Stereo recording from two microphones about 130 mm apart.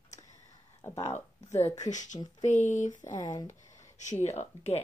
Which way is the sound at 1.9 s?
70° left (ahead or behind).